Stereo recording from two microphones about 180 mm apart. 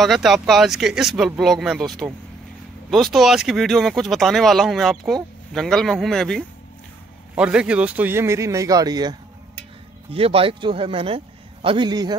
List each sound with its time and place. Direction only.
0.0 s speech: centre (ahead or behind); by 9.1 s 20° right (ahead or behind)
10.1 s a man's voice: 30° right (ahead or behind)